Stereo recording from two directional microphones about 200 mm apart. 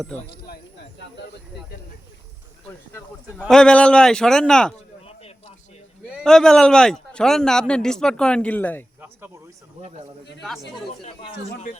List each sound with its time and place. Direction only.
0.3 s a sound: 55° left (ahead or behind)
2.6 s a man's voice: 5° left (ahead or behind)
6.1 s a man's voice: centre (ahead or behind)